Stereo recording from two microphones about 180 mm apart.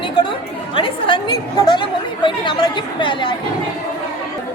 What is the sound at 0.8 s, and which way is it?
A woman's voice, 30° left (ahead or behind).